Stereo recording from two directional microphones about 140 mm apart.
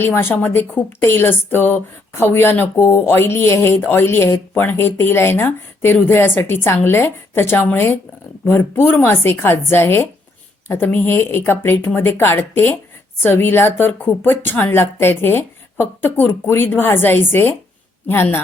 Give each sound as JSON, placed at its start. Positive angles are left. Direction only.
{"t": 0.0, "sound": "a woman's voice", "side_deg": 15}